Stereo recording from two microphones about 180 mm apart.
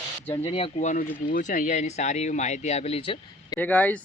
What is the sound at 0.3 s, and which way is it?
Speech, 30° left (ahead or behind).